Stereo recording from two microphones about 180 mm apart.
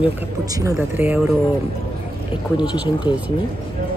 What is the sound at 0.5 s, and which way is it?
Speech, 20° right (ahead or behind).